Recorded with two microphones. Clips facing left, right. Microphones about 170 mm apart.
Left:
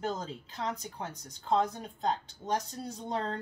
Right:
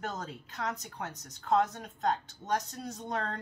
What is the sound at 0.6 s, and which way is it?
A woman's voice, 25° left (ahead or behind).